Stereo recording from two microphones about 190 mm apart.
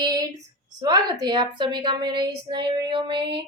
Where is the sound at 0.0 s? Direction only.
20° right (ahead or behind).